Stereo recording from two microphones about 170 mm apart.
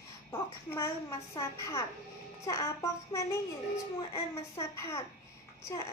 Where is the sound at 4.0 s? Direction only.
35° left (ahead or behind).